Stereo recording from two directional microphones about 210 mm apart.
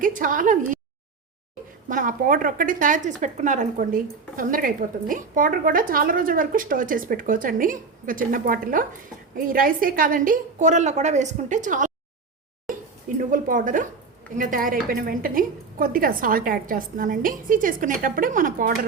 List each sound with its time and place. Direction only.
0.0 s a woman's voice: 40° right (ahead or behind)
1.9 s a woman's voice: 40° right (ahead or behind)
13.1 s a woman's voice: 40° right (ahead or behind)